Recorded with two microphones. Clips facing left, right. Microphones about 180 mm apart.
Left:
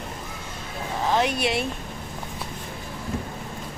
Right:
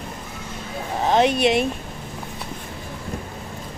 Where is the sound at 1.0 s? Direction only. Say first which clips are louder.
Right 6 dB; 20° right (ahead or behind).